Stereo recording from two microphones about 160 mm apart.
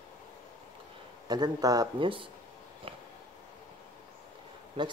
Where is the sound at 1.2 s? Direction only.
25° right (ahead or behind).